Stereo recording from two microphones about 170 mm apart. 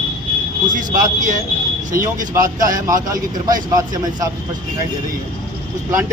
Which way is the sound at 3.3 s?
20° right (ahead or behind).